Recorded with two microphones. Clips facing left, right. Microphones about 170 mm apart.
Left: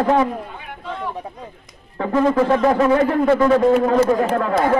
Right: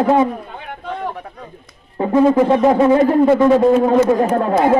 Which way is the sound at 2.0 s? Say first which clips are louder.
Right 4 dB; 20° right (ahead or behind).